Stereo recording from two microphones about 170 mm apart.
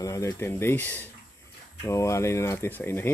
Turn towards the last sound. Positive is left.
turn(degrees=15)  # may be behind; listen again after turning